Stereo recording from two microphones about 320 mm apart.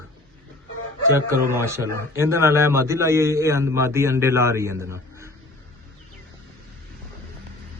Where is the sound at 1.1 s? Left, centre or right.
Centre.